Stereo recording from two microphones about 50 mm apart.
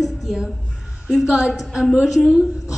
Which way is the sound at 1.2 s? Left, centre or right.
Centre.